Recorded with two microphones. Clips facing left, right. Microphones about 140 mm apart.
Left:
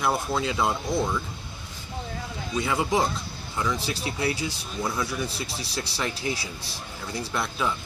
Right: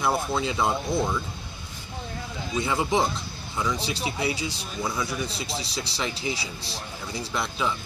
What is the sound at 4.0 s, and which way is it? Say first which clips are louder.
Speech: even; 15° right (ahead or behind).